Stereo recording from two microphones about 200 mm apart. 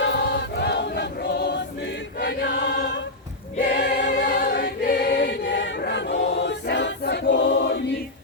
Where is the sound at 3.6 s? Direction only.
45° left (ahead or behind).